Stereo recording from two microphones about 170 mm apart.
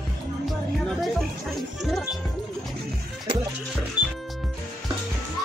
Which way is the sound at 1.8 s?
Centre (ahead or behind).